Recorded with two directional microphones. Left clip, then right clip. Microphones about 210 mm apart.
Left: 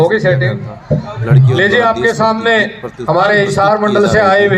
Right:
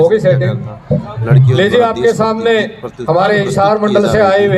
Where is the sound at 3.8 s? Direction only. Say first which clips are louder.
Even; centre (ahead or behind).